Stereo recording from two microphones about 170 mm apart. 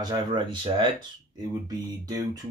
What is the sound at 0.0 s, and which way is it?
Speech, 25° right (ahead or behind).